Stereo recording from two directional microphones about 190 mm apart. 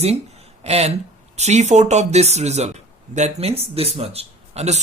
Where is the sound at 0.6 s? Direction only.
35° right (ahead or behind).